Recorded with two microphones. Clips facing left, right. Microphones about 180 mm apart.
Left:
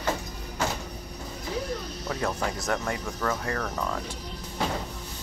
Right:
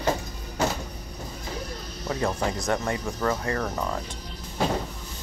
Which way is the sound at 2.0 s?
10° right (ahead or behind).